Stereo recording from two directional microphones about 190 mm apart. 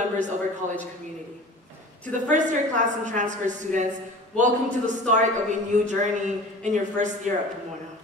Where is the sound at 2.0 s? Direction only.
40° right (ahead or behind).